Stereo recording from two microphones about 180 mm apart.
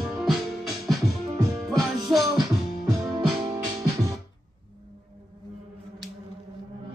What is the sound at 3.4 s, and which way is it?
Music, 15° right (ahead or behind).